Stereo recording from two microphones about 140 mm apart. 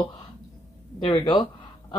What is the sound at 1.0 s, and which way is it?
Speech, 35° left (ahead or behind).